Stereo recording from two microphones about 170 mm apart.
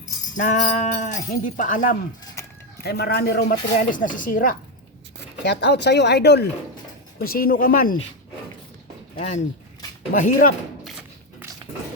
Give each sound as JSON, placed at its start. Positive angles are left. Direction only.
{"t": 0.3, "sound": "speech", "side_deg": 50}
{"t": 2.8, "sound": "speech", "side_deg": 70}
{"t": 5.4, "sound": "speech", "side_deg": 85}
{"t": 7.3, "sound": "speech", "side_deg": 55}
{"t": 9.1, "sound": "speech", "side_deg": 40}
{"t": 11.3, "sound": "a sound", "side_deg": -15}